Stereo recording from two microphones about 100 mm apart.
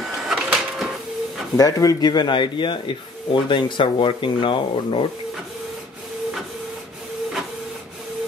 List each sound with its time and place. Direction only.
0.3 s printer: 5° right (ahead or behind)
1.6 s speech: 35° left (ahead or behind); by 5.0 s 55° left (ahead or behind)